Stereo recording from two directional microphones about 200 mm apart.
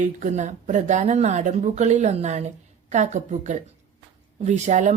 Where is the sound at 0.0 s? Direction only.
40° right (ahead or behind).